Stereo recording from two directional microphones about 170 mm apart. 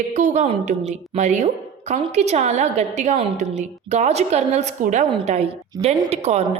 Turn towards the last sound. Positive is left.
turn(degrees=-40)  # may be behind; listen again after turning